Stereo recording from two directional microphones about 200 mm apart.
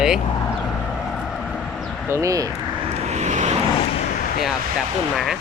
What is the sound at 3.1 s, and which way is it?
Vehicle, 35° right (ahead or behind).